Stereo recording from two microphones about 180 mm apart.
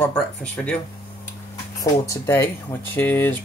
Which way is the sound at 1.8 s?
15° left (ahead or behind).